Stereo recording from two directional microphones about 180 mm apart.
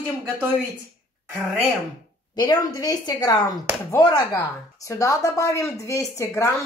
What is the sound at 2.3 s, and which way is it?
Speech, 20° left (ahead or behind).